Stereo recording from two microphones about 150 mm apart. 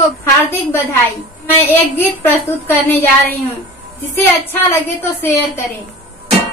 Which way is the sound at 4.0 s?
15° left (ahead or behind).